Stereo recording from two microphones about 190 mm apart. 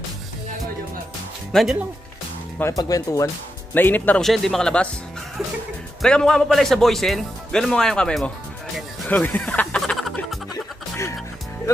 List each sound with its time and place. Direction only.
1.5 s speech: centre (ahead or behind)
2.6 s speech: 20° left (ahead or behind)
6.0 s speech: 5° left (ahead or behind)
9.0 s music: 10° left (ahead or behind)